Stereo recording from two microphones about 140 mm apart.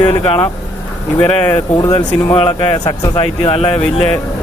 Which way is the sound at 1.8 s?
30° left (ahead or behind).